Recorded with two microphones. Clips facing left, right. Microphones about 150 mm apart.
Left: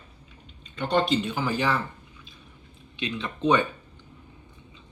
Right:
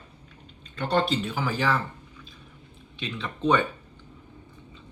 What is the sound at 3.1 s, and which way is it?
Speech, centre (ahead or behind).